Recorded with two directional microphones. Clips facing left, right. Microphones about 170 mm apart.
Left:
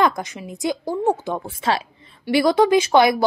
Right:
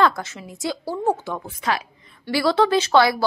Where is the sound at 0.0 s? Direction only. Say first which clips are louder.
Even; 15° left (ahead or behind).